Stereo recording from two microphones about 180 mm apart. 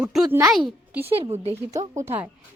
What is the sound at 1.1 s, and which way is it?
Speech, 30° right (ahead or behind).